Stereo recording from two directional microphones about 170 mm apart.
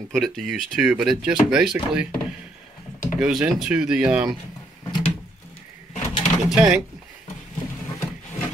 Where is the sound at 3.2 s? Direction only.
5° right (ahead or behind).